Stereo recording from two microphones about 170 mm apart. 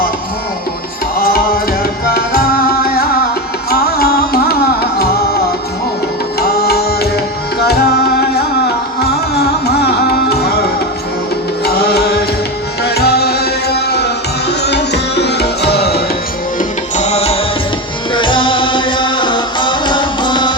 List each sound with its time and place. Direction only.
1.2 s music: 60° left (ahead or behind)
6.4 s music: 65° left (ahead or behind)
11.6 s music: 65° left (ahead or behind)
16.6 s tabla: 40° left (ahead or behind)
18.1 s music: 30° left (ahead or behind)